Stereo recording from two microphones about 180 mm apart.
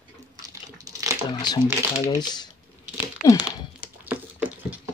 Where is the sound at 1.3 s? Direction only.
25° left (ahead or behind).